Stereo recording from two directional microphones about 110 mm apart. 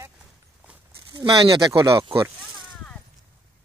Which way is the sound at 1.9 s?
50° right (ahead or behind).